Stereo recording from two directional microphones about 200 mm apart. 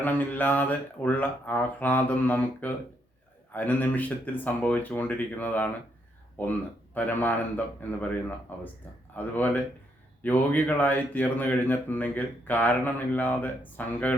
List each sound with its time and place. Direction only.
0.0 s speech: 10° left (ahead or behind)